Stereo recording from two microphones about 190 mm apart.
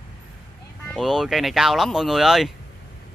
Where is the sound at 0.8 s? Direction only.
Centre (ahead or behind).